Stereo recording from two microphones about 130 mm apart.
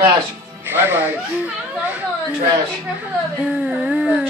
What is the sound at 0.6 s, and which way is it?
Speech, 15° right (ahead or behind).